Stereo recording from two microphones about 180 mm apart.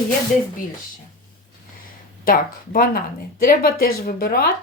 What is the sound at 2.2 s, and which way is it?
A woman's voice, 50° left (ahead or behind).